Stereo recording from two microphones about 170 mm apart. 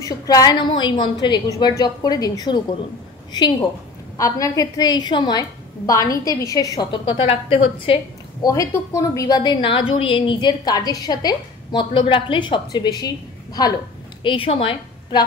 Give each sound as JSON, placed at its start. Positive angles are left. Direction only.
{"t": 0.0, "sound": "a woman's voice", "side_deg": 20}